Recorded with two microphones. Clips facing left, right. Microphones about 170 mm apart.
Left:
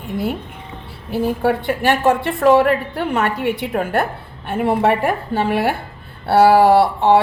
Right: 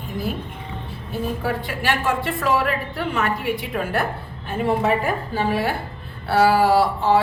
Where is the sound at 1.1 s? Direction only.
70° left (ahead or behind); by 2.5 s 50° left (ahead or behind).